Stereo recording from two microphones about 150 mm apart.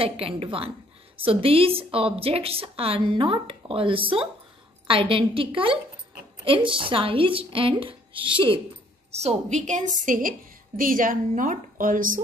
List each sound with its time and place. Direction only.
0.0 s a woman's voice: 40° right (ahead or behind)
9.1 s a woman's voice: 45° right (ahead or behind); by 12.2 s 65° right (ahead or behind)